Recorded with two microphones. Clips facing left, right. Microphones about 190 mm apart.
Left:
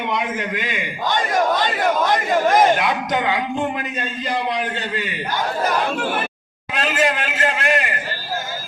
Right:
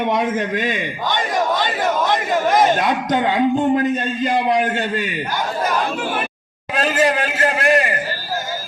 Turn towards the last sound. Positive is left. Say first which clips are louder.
# right 4 dB
turn(degrees=-40)  # may be behind; listen again after turning